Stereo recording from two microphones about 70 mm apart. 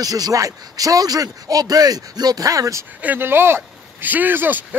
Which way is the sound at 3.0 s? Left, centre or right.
Right.